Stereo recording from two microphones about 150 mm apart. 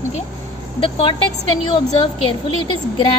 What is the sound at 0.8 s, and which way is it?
Speech, 35° left (ahead or behind).